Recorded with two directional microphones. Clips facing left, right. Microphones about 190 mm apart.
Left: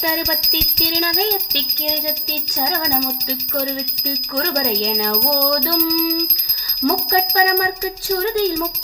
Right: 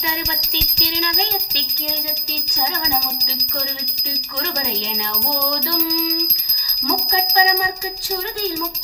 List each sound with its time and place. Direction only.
0.3 s music: 40° left (ahead or behind)